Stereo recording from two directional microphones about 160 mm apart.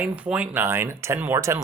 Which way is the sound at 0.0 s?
10° right (ahead or behind).